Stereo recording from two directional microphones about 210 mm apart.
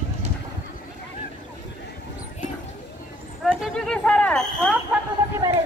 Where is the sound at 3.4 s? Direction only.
5° left (ahead or behind).